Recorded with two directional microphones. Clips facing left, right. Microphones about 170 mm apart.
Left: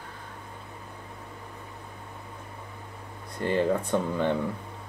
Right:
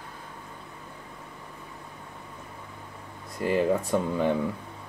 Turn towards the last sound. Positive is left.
turn(degrees=-5)  # may be behind; listen again after turning